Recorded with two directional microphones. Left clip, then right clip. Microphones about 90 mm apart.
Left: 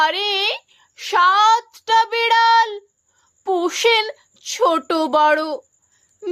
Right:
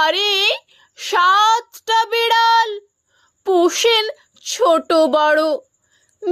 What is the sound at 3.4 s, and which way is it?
Speech, 40° right (ahead or behind).